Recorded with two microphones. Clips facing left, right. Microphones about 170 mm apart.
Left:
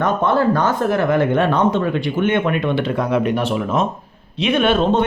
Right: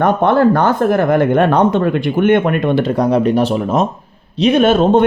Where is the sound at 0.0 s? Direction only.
60° right (ahead or behind).